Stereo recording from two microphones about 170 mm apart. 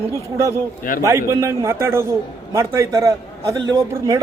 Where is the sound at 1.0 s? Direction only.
15° right (ahead or behind).